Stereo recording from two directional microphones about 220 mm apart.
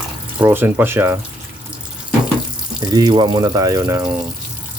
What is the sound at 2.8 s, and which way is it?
Speech, 20° right (ahead or behind).